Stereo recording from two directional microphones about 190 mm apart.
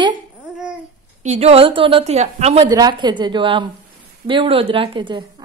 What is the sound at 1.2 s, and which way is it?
A woman's voice, 35° right (ahead or behind).